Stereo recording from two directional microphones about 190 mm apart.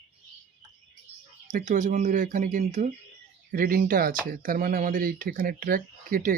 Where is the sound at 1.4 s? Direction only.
40° right (ahead or behind).